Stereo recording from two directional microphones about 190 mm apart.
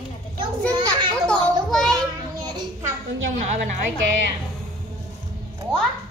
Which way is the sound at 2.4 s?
25° right (ahead or behind).